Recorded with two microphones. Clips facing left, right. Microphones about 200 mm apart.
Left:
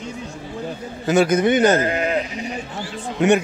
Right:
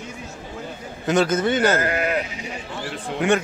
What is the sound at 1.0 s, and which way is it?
Speech, 10° left (ahead or behind).